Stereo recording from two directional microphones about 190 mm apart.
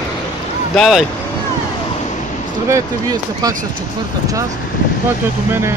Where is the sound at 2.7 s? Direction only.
20° right (ahead or behind).